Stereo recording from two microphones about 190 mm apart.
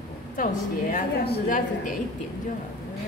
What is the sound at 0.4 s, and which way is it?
A woman's voice, 45° left (ahead or behind).